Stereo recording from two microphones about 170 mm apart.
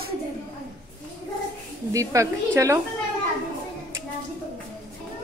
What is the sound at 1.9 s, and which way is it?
Speech, 20° right (ahead or behind).